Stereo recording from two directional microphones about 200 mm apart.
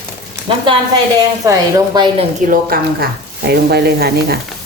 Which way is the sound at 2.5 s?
50° right (ahead or behind).